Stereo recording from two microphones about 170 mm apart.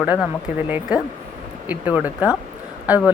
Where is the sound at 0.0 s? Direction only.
5° right (ahead or behind).